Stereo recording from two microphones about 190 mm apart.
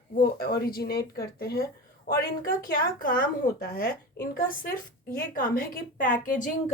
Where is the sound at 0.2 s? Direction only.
50° left (ahead or behind).